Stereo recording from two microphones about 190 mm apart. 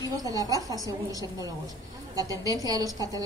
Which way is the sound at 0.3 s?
20° right (ahead or behind).